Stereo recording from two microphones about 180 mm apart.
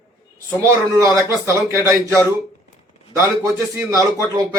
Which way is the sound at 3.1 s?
15° right (ahead or behind).